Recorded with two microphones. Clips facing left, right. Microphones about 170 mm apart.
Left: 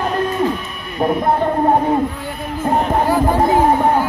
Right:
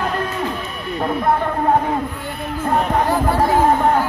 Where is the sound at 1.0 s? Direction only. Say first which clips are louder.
Left 3 dB; 15° left (ahead or behind).